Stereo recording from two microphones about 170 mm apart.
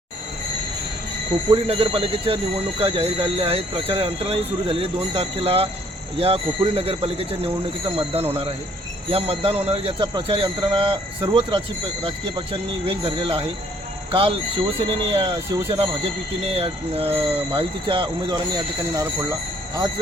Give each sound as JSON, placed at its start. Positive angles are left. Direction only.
{"t": 1.5, "sound": "speech", "side_deg": -35}
{"t": 16.5, "sound": "speech", "side_deg": -35}